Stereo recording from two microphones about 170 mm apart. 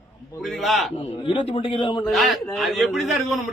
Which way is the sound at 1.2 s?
30° left (ahead or behind).